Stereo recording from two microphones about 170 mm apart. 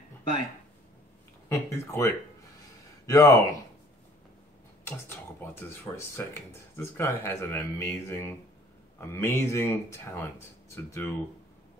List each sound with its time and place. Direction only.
1.5 s speech: 15° left (ahead or behind)
4.8 s speech: 15° left (ahead or behind)